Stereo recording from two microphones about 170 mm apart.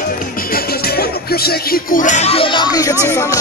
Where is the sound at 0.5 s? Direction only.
65° left (ahead or behind).